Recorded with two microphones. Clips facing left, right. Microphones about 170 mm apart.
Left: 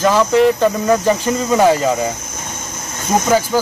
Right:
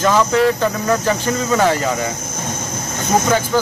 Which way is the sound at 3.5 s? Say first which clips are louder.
Right 3 dB; 10° left (ahead or behind).